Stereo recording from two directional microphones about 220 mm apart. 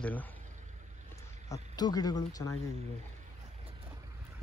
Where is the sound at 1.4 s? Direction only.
15° left (ahead or behind).